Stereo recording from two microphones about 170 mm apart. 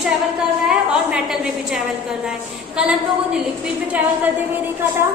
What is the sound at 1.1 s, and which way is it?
Speech, 5° right (ahead or behind).